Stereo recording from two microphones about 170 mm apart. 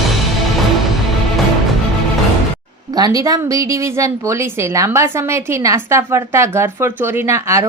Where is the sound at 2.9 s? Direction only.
20° right (ahead or behind).